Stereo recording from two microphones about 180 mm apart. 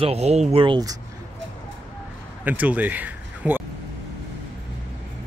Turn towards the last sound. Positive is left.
turn(degrees=-10)  # may be behind; listen again after turning